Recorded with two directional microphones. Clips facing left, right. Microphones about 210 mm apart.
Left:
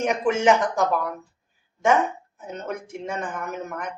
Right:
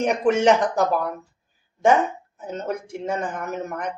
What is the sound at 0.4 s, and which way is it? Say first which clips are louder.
Speech: right 2 dB; 35° right (ahead or behind).